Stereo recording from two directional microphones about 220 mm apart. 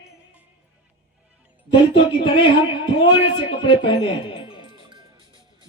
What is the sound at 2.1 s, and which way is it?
A man's voice, 20° left (ahead or behind).